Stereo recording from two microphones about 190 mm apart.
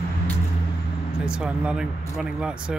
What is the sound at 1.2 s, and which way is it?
Speech, 5° right (ahead or behind).